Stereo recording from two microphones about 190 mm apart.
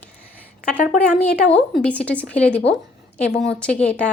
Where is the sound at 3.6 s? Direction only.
5° left (ahead or behind).